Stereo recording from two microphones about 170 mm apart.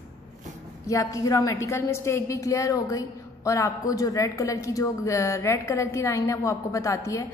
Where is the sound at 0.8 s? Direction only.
20° left (ahead or behind).